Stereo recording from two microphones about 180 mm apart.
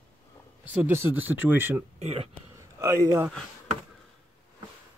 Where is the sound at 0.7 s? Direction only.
10° right (ahead or behind).